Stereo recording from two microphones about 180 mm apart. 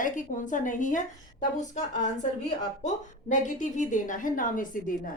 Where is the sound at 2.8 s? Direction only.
45° left (ahead or behind).